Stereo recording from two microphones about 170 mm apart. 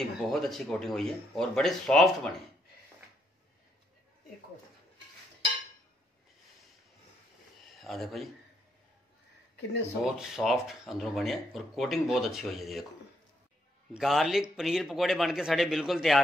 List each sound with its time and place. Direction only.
0.0 s speech: centre (ahead or behind)
7.7 s speech: centre (ahead or behind)
10.0 s speech: 5° right (ahead or behind)
13.9 s speech: centre (ahead or behind)